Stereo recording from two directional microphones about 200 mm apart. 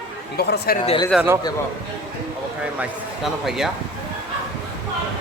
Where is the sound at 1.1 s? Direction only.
5° right (ahead or behind).